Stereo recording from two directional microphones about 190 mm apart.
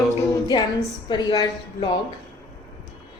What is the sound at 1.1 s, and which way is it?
Speech, 25° left (ahead or behind).